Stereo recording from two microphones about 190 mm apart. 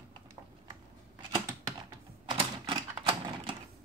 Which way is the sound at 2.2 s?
25° right (ahead or behind).